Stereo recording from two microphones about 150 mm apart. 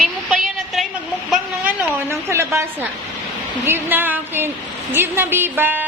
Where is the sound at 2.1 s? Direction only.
15° right (ahead or behind).